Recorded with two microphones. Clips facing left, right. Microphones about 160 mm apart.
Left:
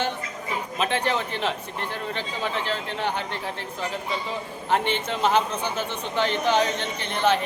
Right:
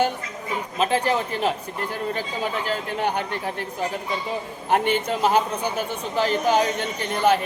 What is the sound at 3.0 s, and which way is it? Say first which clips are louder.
Speech: right 4 dB; 15° right (ahead or behind).